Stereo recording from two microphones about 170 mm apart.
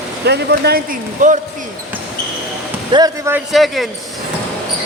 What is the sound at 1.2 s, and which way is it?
Speech, 45° right (ahead or behind).